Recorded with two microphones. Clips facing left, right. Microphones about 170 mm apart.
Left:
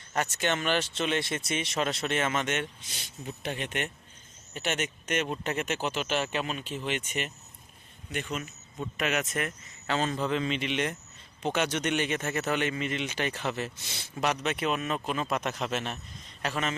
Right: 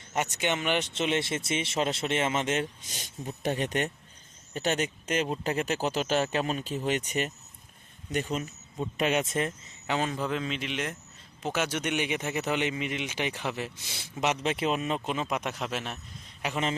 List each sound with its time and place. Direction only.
0.1 s speech: 15° right (ahead or behind)
3.0 s speech: 45° right (ahead or behind); by 9.7 s 30° right (ahead or behind)
9.8 s speech: 15° right (ahead or behind)